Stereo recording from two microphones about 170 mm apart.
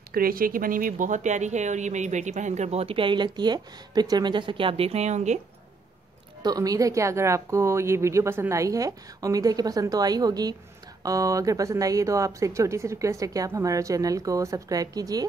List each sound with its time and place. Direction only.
0.1 s speech: 60° right (ahead or behind); by 5.4 s 40° right (ahead or behind)
6.4 s speech: 20° right (ahead or behind)